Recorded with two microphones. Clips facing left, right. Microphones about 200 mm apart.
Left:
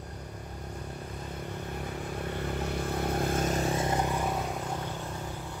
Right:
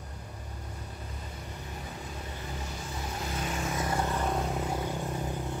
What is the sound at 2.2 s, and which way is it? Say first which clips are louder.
Vehicle: left 7 dB; 60° left (ahead or behind).